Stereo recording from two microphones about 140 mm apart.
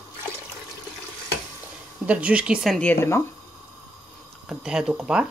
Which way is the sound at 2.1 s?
10° right (ahead or behind).